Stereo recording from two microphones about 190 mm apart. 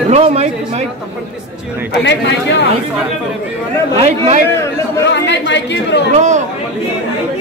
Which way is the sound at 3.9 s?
35° right (ahead or behind).